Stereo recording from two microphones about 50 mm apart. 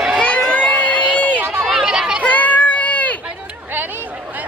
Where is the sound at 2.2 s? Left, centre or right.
Left.